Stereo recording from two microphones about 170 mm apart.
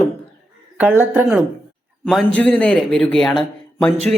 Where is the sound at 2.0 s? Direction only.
5° left (ahead or behind).